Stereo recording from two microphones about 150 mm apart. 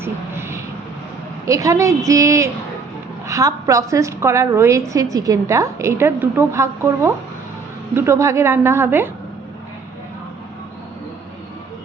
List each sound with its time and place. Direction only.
0.0 s vehicle: 15° right (ahead or behind)
1.5 s a woman's voice: 20° right (ahead or behind)